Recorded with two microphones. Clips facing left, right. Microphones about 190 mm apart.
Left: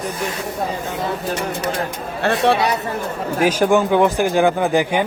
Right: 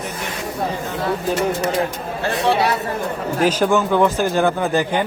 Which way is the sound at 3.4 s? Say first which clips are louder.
Left 2 dB; 15° left (ahead or behind).